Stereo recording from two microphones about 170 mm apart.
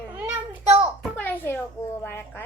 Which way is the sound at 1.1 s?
10° left (ahead or behind).